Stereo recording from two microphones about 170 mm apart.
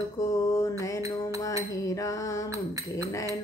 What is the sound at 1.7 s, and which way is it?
Music, 20° left (ahead or behind).